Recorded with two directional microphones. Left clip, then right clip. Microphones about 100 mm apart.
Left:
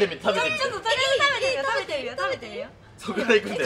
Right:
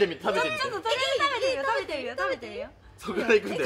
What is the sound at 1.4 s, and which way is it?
A woman's voice, 25° left (ahead or behind).